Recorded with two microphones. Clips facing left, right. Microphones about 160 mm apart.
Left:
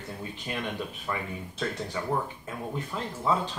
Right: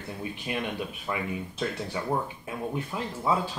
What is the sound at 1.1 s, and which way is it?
Speech, 15° right (ahead or behind).